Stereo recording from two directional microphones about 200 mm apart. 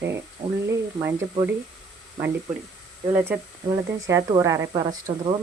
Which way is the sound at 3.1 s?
10° right (ahead or behind).